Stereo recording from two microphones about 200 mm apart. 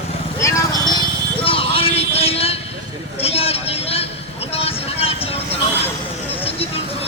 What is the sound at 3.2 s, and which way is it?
Vehicle, 30° left (ahead or behind).